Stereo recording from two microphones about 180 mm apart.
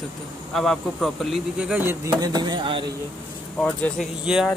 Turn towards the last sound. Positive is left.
turn(degrees=-5)  # may be behind; listen again after turning